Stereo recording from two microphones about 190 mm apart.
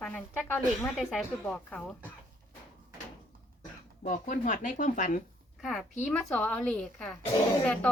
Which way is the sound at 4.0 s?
40° left (ahead or behind).